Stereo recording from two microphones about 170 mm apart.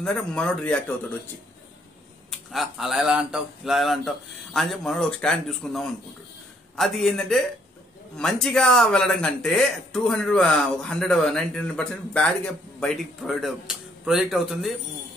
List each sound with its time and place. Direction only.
0.0 s speech: 5° left (ahead or behind)
2.3 s speech: centre (ahead or behind)